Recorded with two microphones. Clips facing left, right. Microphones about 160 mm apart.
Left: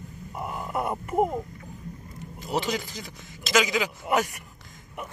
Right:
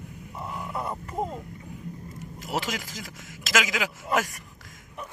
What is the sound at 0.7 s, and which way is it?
Speech, 20° left (ahead or behind).